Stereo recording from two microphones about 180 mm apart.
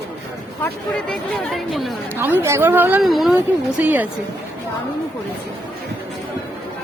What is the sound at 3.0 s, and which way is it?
A woman's voice, centre (ahead or behind).